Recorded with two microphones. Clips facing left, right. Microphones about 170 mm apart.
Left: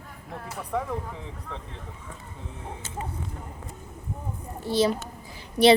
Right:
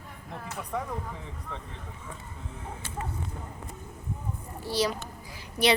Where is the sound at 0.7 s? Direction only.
Centre (ahead or behind).